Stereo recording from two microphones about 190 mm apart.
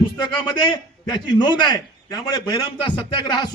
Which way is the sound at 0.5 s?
25° left (ahead or behind).